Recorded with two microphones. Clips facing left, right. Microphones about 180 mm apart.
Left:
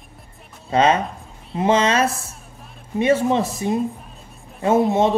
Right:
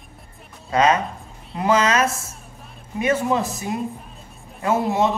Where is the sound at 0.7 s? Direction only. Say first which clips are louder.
Left 1 dB; 30° left (ahead or behind).